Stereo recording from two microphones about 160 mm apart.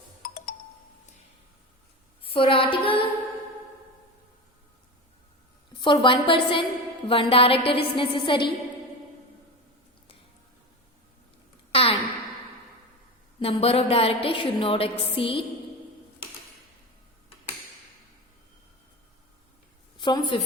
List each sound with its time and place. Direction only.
0.2 s music: 65° left (ahead or behind)
2.2 s a woman's voice: 35° left (ahead or behind)
5.7 s a woman's voice: 30° left (ahead or behind)
11.7 s a sound: 35° left (ahead or behind)
13.4 s a woman's voice: 35° left (ahead or behind)
20.0 s a woman's voice: 30° left (ahead or behind)